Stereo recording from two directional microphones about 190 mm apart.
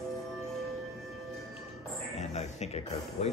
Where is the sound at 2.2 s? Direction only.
35° left (ahead or behind).